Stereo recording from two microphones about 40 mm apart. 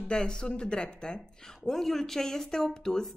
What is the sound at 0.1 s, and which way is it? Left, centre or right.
A woman's voice, left.